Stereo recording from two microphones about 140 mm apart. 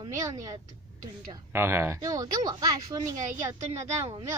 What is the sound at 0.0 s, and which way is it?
Speech, 25° right (ahead or behind).